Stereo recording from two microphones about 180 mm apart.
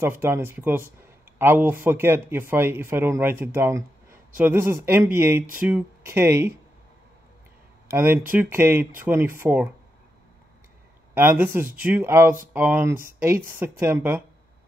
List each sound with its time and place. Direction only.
0.0 s speech: 15° right (ahead or behind)
7.9 s speech: 15° right (ahead or behind)
11.1 s speech: 10° right (ahead or behind)